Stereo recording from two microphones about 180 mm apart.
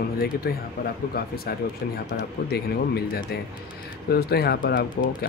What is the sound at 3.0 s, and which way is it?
Speech, 60° left (ahead or behind).